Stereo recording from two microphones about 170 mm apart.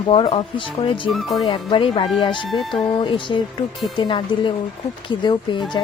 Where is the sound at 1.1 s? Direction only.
Centre (ahead or behind).